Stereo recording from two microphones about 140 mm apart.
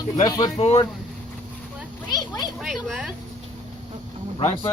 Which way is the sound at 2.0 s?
30° left (ahead or behind).